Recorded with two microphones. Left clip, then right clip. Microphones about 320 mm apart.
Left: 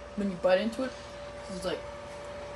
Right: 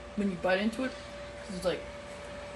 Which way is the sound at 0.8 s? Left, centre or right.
Centre.